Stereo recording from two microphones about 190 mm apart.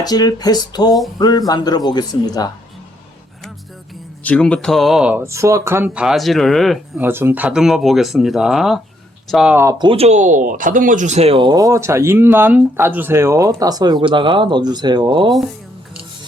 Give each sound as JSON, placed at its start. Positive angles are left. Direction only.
{"t": 0.0, "sound": "a man's voice", "side_deg": 20}
{"t": 4.2, "sound": "speech", "side_deg": 5}
{"t": 7.0, "sound": "speech", "side_deg": -10}
{"t": 9.6, "sound": "speech", "side_deg": -25}
{"t": 15.3, "sound": "speech", "side_deg": 0}